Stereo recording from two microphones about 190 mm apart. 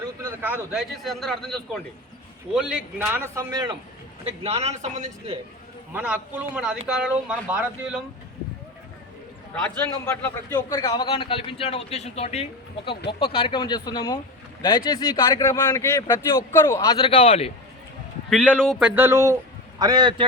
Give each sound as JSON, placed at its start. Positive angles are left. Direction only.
{"t": 0.2, "sound": "a man's voice", "side_deg": -10}
{"t": 4.4, "sound": "speech", "side_deg": -35}
{"t": 5.9, "sound": "speech", "side_deg": -10}
{"t": 9.7, "sound": "a man's voice", "side_deg": 15}
{"t": 18.3, "sound": "a man's voice", "side_deg": 5}